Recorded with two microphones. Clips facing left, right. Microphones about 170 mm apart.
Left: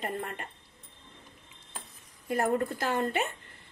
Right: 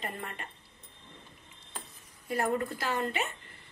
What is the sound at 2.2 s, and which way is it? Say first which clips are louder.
A woman's voice: left 3 dB; 45° left (ahead or behind).